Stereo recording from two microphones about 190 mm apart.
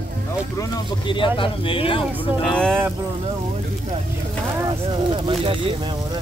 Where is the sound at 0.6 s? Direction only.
25° left (ahead or behind).